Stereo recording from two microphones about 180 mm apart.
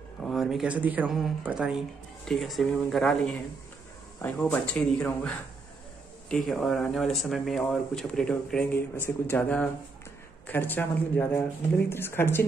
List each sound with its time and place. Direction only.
0.2 s speech: centre (ahead or behind)